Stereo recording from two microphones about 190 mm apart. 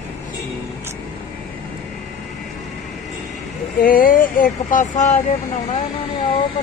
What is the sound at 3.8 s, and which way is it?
Speech, 45° left (ahead or behind).